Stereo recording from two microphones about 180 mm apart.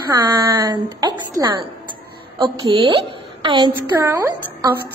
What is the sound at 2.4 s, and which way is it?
A woman's voice, 25° right (ahead or behind).